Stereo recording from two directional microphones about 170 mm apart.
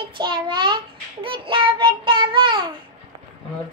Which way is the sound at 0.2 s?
25° right (ahead or behind).